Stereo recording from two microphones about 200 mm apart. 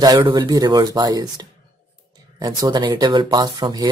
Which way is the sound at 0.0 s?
20° right (ahead or behind).